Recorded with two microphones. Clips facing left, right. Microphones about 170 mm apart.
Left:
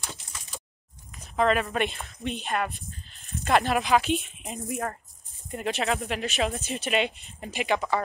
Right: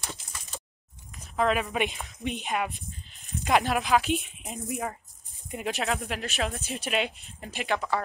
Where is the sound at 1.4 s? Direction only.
Centre (ahead or behind).